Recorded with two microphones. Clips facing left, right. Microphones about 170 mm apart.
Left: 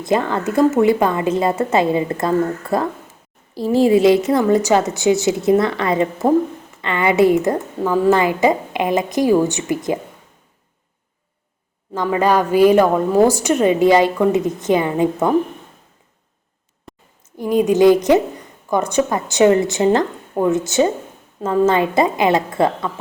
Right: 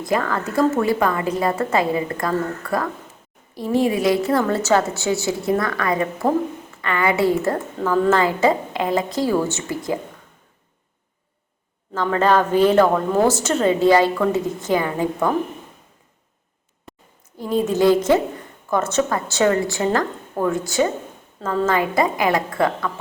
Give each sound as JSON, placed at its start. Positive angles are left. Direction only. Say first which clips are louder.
{"t": 0.0, "sound": "a woman's voice", "louder": "left 3 dB", "side_deg": 25}
{"t": 7.8, "sound": "a woman's voice", "louder": "left 2 dB", "side_deg": 10}
{"t": 12.0, "sound": "a woman's voice", "louder": "left 1 dB", "side_deg": 10}
{"t": 17.3, "sound": "a woman's voice", "louder": "left 5 dB", "side_deg": 15}